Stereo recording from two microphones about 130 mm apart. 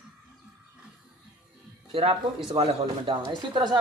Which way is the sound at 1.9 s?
45° right (ahead or behind).